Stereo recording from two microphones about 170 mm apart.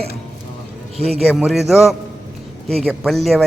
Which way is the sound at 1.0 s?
35° right (ahead or behind).